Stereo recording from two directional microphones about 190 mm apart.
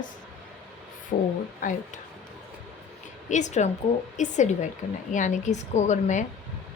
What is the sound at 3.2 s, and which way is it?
Speech, 40° left (ahead or behind).